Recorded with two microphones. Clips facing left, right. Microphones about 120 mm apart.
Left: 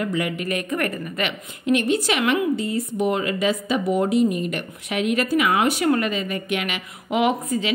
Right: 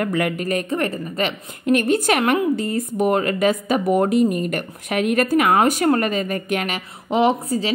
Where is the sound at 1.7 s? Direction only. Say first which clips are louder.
Right 3 dB; 45° right (ahead or behind).